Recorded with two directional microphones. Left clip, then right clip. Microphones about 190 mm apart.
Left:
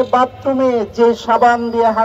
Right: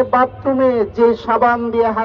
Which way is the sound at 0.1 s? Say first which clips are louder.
Left 1 dB; 20° right (ahead or behind).